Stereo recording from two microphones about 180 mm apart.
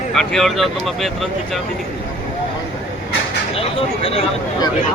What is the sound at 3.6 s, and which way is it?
Speech, 30° left (ahead or behind).